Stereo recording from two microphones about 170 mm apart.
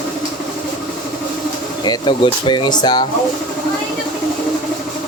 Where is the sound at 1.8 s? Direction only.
25° left (ahead or behind).